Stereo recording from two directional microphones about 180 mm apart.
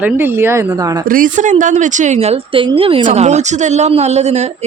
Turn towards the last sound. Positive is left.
turn(degrees=-40)  # may be behind; listen again after turning